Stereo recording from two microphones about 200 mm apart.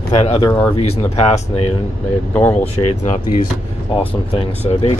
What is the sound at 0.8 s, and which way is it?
Speech, 30° left (ahead or behind).